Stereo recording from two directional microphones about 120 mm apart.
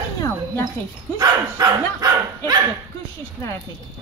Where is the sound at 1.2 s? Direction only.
35° right (ahead or behind).